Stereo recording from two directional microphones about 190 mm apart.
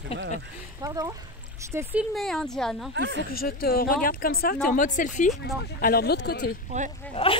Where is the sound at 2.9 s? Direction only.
70° right (ahead or behind).